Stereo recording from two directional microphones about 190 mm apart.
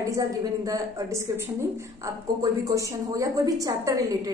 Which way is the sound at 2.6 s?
15° right (ahead or behind).